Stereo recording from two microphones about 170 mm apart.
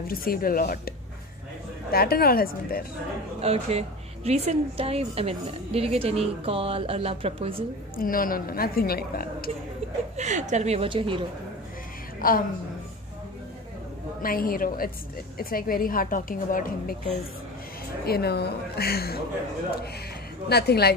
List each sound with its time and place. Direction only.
0.0 s a woman's voice: 60° left (ahead or behind)
3.3 s speech: 35° right (ahead or behind)
7.9 s a woman's voice: 55° left (ahead or behind)
10.1 s speech: 45° right (ahead or behind)
12.2 s a woman's voice: 55° left (ahead or behind)
14.2 s a woman's voice: 60° left (ahead or behind)
18.0 s a woman's voice: 70° left (ahead or behind)
20.4 s a woman's voice: 70° left (ahead or behind)